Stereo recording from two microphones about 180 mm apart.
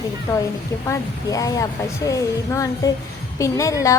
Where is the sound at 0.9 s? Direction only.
20° left (ahead or behind).